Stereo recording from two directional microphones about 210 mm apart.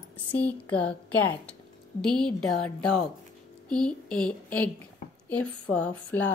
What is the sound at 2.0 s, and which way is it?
A woman's voice, 5° left (ahead or behind).